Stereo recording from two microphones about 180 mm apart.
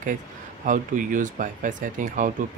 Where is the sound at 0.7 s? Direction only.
45° right (ahead or behind).